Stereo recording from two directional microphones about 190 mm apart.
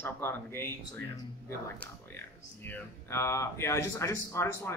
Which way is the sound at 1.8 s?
10° left (ahead or behind).